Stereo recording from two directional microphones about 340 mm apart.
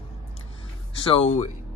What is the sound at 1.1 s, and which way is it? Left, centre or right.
Speech, centre.